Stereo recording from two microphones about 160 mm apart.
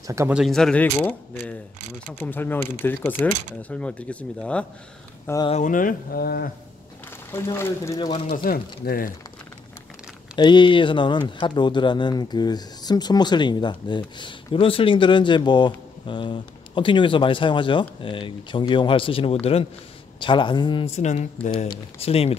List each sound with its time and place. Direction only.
0.0 s speech: 20° right (ahead or behind)
0.3 s speech: centre (ahead or behind)
5.6 s speech: 55° left (ahead or behind); by 6.5 s 70° left (ahead or behind)
7.3 s speech: 15° left (ahead or behind)
8.5 s speech: 70° left (ahead or behind)
10.3 s speech: 30° left (ahead or behind)